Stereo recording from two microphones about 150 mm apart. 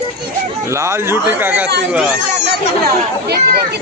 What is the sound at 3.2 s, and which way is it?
Speech, 90° right.